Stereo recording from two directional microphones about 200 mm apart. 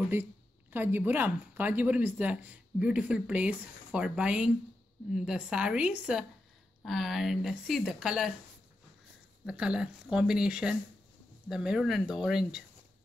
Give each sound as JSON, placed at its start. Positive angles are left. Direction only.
{"t": 0.1, "sound": "speech", "side_deg": -10}
{"t": 9.5, "sound": "speech", "side_deg": -5}